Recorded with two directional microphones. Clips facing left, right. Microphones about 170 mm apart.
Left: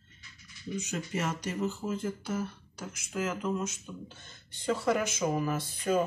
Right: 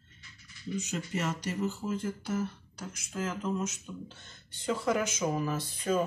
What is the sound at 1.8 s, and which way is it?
Speech, 30° left (ahead or behind).